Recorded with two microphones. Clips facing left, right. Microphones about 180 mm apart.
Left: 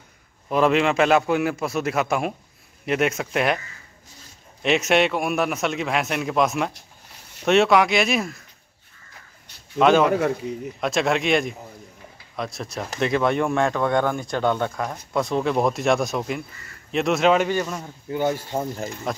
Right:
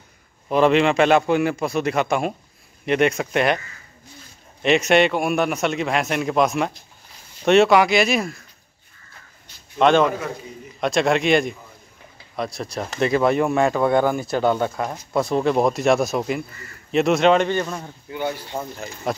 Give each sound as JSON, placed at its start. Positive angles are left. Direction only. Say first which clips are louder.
{"t": 0.5, "sound": "speech", "louder": "right 3 dB", "side_deg": 0}
{"t": 4.6, "sound": "speech", "louder": "right 3 dB", "side_deg": 0}
{"t": 9.8, "sound": "speech", "louder": "right 1 dB", "side_deg": 5}
{"t": 10.0, "sound": "a man's voice", "louder": "left 4 dB", "side_deg": 65}
{"t": 10.8, "sound": "speech", "louder": "right 3 dB", "side_deg": 0}
{"t": 18.1, "sound": "speech", "louder": "left 3 dB", "side_deg": 45}
{"t": 19.1, "sound": "speech", "louder": "right 4 dB", "side_deg": -5}